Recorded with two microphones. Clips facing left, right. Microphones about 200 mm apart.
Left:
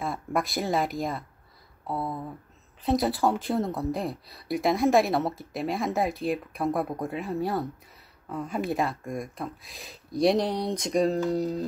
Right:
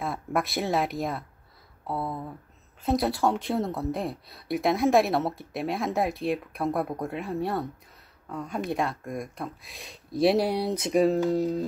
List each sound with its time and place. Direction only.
0.0 s speech: centre (ahead or behind)